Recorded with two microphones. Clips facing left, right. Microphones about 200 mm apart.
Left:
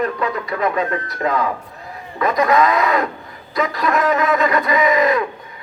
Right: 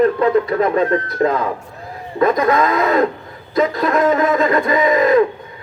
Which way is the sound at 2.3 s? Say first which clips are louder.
Left 3 dB; 50° right (ahead or behind).